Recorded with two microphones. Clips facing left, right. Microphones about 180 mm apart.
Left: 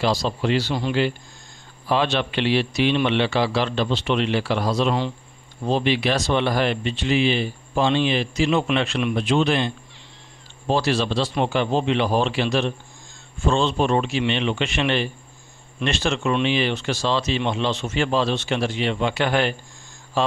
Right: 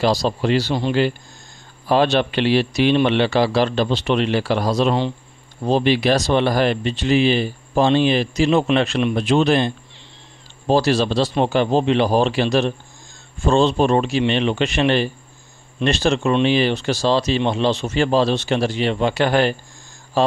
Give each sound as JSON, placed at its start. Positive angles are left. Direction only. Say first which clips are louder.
{"t": 0.0, "sound": "speech", "louder": "right 4 dB", "side_deg": -40}
{"t": 1.9, "sound": "speech", "louder": "right 5 dB", "side_deg": -40}
{"t": 10.7, "sound": "speech", "louder": "right 4 dB", "side_deg": -40}